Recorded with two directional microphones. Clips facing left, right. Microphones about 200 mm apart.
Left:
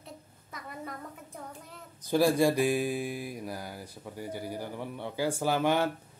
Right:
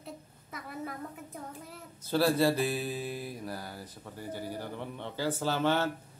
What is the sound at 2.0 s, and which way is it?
Mantra, 15° left (ahead or behind).